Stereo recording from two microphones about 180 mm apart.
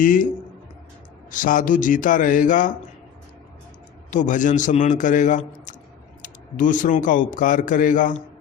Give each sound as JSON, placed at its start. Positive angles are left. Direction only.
{"t": 0.0, "sound": "a man's voice", "side_deg": 50}
{"t": 1.3, "sound": "a man's voice", "side_deg": 50}
{"t": 4.1, "sound": "a man's voice", "side_deg": 45}